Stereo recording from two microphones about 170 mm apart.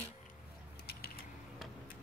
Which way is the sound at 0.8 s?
65° left (ahead or behind).